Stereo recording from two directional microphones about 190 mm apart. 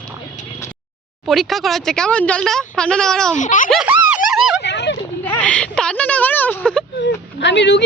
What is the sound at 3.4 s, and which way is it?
Speech, 40° left (ahead or behind).